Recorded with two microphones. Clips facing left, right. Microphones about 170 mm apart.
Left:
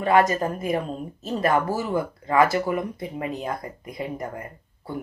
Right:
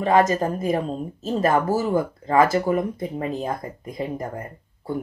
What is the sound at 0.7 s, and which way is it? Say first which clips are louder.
A woman's voice: right 2 dB; 45° right (ahead or behind).